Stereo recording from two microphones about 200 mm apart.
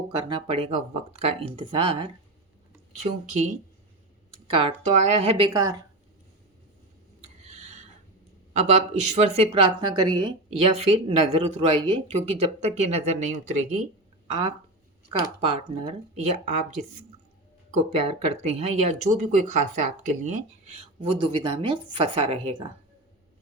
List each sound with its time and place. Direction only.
0.1 s speech: 20° right (ahead or behind)
5.5 s speech: 15° right (ahead or behind)
7.5 s a sound: 35° right (ahead or behind)
8.5 s speech: 35° right (ahead or behind)
15.2 s speech: 30° right (ahead or behind)
17.7 s speech: 30° right (ahead or behind)